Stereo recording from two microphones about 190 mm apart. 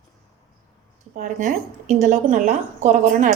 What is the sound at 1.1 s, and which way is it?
A woman's voice, 40° right (ahead or behind).